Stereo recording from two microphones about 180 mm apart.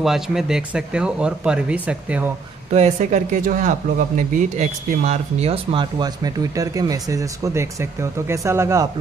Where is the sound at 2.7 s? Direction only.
40° right (ahead or behind).